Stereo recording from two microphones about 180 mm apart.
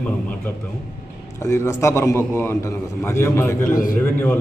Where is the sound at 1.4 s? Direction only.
15° left (ahead or behind).